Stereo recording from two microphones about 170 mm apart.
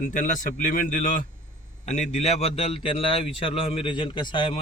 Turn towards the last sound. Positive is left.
turn(degrees=30)  # may be behind; listen again after turning